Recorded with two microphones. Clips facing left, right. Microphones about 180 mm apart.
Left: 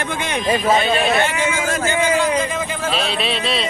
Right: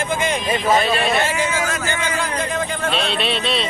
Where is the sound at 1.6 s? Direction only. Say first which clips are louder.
Left 3 dB; 30° left (ahead or behind).